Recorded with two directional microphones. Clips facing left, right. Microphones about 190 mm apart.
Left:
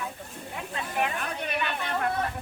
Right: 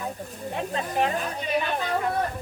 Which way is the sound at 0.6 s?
40° right (ahead or behind).